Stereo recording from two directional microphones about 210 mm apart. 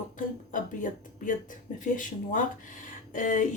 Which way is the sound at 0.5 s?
40° left (ahead or behind).